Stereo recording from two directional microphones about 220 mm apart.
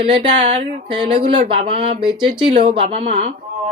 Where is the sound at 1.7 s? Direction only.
25° right (ahead or behind).